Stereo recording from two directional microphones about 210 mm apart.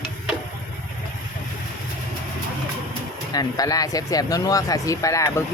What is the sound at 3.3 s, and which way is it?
Speech, 15° left (ahead or behind).